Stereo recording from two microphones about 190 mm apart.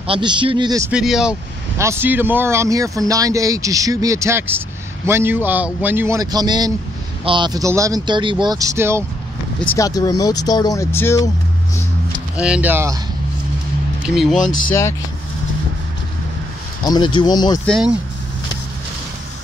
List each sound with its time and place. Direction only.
0.0 s speech: 25° right (ahead or behind)
0.9 s speech: 5° right (ahead or behind)
9.8 s speech: 20° left (ahead or behind)
12.4 s speech: 5° right (ahead or behind)
14.0 s speech: centre (ahead or behind)
16.8 s speech: 20° left (ahead or behind)
17.6 s speech: centre (ahead or behind)